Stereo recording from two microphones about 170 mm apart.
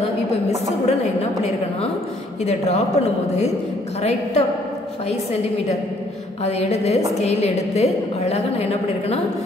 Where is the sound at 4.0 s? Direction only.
40° left (ahead or behind).